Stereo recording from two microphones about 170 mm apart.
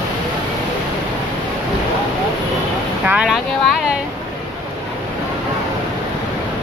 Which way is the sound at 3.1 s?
5° right (ahead or behind).